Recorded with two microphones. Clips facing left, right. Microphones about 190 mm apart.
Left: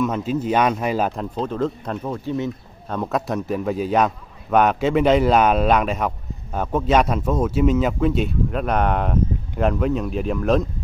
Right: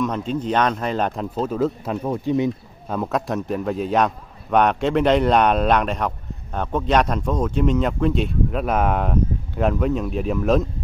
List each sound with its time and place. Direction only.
0.0 s speech: 5° left (ahead or behind)
1.3 s speech: 5° right (ahead or behind)
2.9 s a man's voice: centre (ahead or behind)